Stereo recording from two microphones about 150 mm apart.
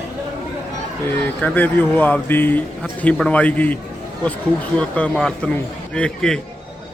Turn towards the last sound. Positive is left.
turn(degrees=5)  # may be behind; listen again after turning